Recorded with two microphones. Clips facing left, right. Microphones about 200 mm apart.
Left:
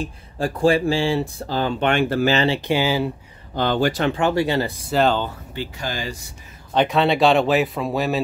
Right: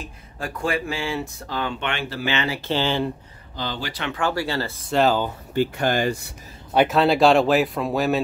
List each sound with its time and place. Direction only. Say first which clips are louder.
0.0 s speech: left 8 dB; 30° left (ahead or behind)
2.7 s speech: right 1 dB; 10° left (ahead or behind)
3.5 s speech: left 10 dB; 55° left (ahead or behind)
4.1 s speech: left 5 dB; 20° left (ahead or behind)
4.9 s speech: even; centre (ahead or behind)
5.5 s speech: right 8 dB; 55° right (ahead or behind)
6.7 s speech: even; 5° right (ahead or behind)